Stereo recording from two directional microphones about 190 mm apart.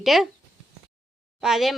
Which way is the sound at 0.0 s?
Centre (ahead or behind).